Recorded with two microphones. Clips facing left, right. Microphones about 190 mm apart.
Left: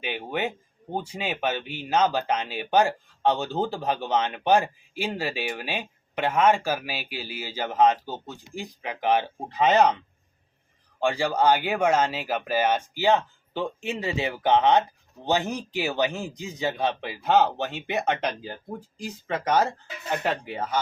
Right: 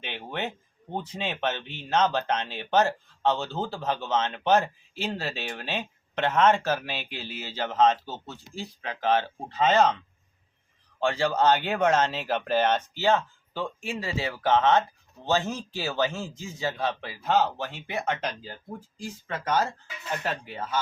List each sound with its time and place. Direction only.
0.0 s speech: 10° left (ahead or behind)
11.0 s speech: 15° left (ahead or behind)